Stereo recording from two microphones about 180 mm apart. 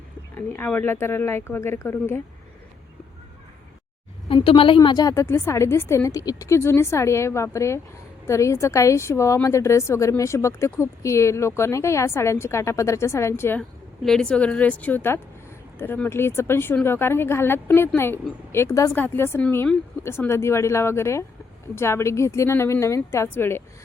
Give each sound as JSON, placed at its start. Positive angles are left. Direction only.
{"t": 0.3, "sound": "a woman's voice", "side_deg": 10}
{"t": 4.3, "sound": "a woman's voice", "side_deg": 30}